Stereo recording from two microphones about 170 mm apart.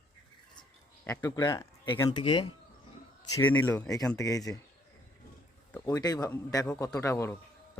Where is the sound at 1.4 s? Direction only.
25° left (ahead or behind).